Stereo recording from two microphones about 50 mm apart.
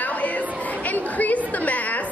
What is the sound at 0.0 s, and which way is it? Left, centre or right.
Chatter, left.